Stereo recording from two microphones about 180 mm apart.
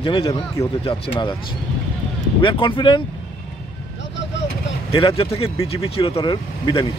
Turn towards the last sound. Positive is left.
turn(degrees=25)  # may be behind; listen again after turning